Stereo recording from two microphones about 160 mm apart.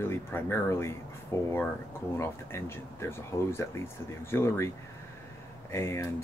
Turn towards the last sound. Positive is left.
turn(degrees=15)  # may be behind; listen again after turning